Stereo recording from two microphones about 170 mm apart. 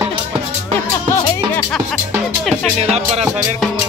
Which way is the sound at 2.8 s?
40° right (ahead or behind).